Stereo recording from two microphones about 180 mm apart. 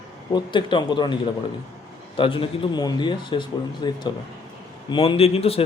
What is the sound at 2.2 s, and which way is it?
Speech, 30° left (ahead or behind).